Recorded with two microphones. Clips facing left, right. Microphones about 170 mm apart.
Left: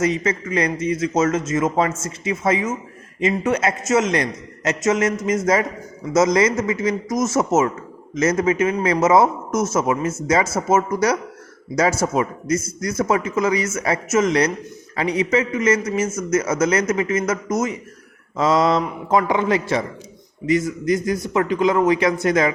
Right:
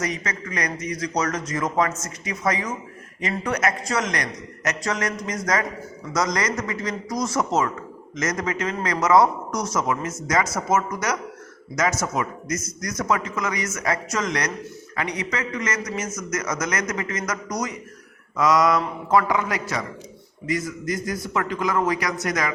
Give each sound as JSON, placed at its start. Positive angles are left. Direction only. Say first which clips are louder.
{"t": 0.0, "sound": "a man's voice", "louder": "left 8 dB", "side_deg": 25}